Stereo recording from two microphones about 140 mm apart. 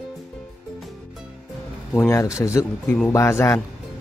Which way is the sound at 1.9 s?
20° left (ahead or behind).